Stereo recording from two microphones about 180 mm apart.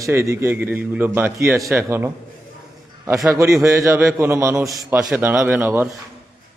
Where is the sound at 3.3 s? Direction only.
15° right (ahead or behind).